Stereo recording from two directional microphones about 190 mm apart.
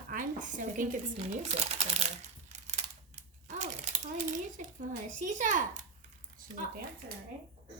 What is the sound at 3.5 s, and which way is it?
A child's voice, 40° right (ahead or behind).